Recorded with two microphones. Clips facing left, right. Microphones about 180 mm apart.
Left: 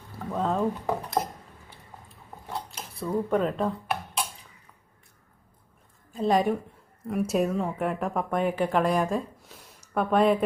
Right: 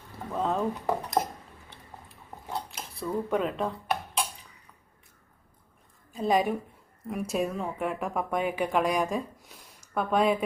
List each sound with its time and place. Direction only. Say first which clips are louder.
0.3 s speech: left 2 dB; centre (ahead or behind)
2.5 s dishes: even; centre (ahead or behind)
6.1 s speech: left 2 dB; centre (ahead or behind)
9.5 s a sound: left 3 dB; 5° left (ahead or behind)